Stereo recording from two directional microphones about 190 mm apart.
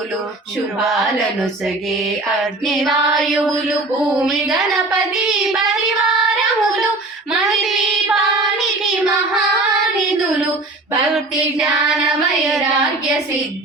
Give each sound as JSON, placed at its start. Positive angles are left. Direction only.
{"t": 0.9, "sound": "female singing", "side_deg": 0}
{"t": 5.1, "sound": "child singing", "side_deg": 0}
{"t": 7.4, "sound": "music", "side_deg": 0}
{"t": 8.8, "sound": "child singing", "side_deg": 0}
{"t": 11.1, "sound": "female singing", "side_deg": 0}